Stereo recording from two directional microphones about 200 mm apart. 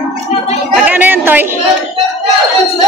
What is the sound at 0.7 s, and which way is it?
Chatter, 5° right (ahead or behind).